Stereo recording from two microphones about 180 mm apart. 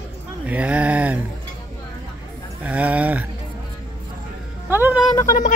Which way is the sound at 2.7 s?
10° right (ahead or behind).